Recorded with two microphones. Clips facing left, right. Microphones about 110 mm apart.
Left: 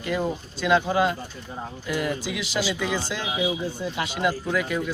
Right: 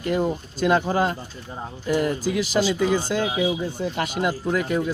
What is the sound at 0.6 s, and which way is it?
Speech, 40° right (ahead or behind).